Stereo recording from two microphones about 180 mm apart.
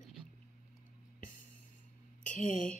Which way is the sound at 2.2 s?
45° left (ahead or behind).